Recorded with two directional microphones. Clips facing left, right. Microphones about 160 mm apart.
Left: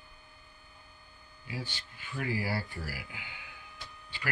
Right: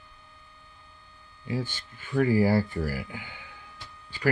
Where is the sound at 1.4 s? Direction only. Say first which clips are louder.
Right 9 dB; 45° right (ahead or behind).